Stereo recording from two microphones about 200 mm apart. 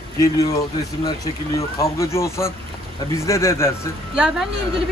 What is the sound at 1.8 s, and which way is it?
Speech, 15° left (ahead or behind).